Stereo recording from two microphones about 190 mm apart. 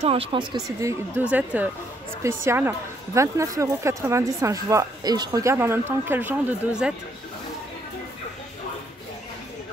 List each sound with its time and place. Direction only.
0.0 s speech: 30° right (ahead or behind); by 6.9 s 5° right (ahead or behind)